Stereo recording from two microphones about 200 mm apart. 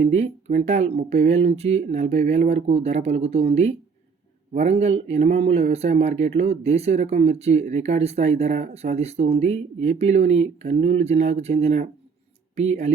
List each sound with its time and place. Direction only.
0.0 s speech: 35° right (ahead or behind)